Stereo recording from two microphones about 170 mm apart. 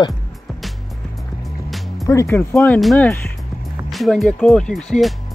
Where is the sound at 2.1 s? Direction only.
15° left (ahead or behind).